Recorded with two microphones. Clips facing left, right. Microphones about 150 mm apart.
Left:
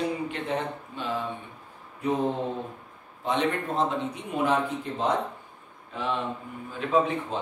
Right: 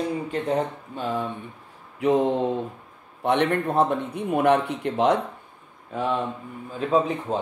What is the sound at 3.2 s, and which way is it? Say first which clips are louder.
Speech: right 5 dB; 60° right (ahead or behind).